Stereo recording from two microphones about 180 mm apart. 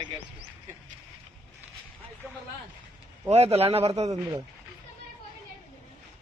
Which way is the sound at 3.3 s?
35° right (ahead or behind).